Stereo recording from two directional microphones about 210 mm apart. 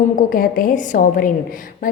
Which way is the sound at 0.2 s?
40° left (ahead or behind).